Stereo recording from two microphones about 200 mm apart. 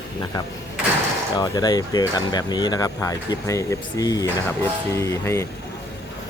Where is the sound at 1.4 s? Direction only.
20° left (ahead or behind).